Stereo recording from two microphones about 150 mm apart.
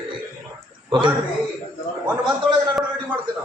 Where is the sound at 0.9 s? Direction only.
30° right (ahead or behind).